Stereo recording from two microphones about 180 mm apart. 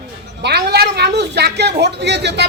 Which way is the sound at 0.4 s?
65° right (ahead or behind).